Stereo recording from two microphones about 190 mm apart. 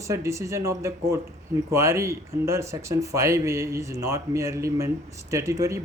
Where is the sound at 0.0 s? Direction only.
15° right (ahead or behind).